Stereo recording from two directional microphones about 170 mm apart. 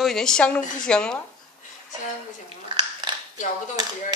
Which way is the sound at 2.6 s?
25° right (ahead or behind).